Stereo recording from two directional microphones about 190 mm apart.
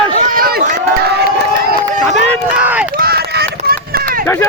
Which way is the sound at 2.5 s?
5° right (ahead or behind).